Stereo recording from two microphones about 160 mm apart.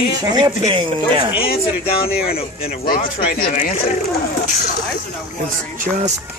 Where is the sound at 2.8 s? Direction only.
65° left (ahead or behind).